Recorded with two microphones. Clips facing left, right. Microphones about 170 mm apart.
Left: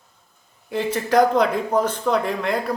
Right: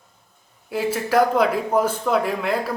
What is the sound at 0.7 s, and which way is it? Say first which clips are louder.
Speech: even; 5° right (ahead or behind).